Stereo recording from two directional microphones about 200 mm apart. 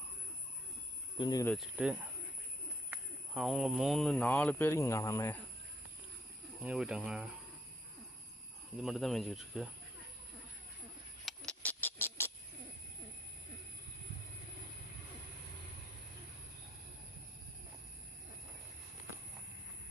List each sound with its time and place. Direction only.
1.2 s speech: 20° left (ahead or behind)
1.5 s speech: 5° right (ahead or behind); by 5.4 s 15° left (ahead or behind)
6.6 s speech: 5° right (ahead or behind)
8.8 s speech: centre (ahead or behind)
11.3 s a sound: 5° left (ahead or behind)